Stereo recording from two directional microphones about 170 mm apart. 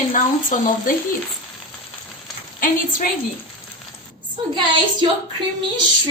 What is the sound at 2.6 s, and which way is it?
Speech, 55° left (ahead or behind).